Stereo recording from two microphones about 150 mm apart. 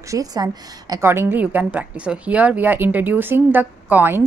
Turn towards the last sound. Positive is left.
turn(degrees=-15)  # may be behind; listen again after turning